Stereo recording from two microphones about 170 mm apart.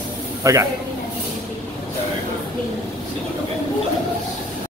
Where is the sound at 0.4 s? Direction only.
20° right (ahead or behind).